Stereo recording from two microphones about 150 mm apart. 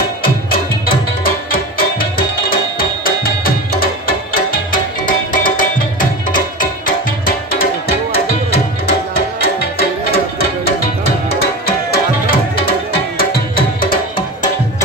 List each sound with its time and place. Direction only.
5.0 s music: 65° left (ahead or behind)
9.1 s music: 90° left
11.6 s music: 90° left
13.2 s music: 80° left